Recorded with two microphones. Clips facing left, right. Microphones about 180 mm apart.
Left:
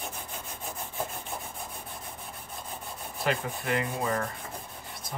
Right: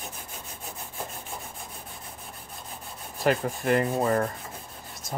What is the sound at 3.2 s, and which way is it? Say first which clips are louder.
Rub: right 5 dB; 45° right (ahead or behind).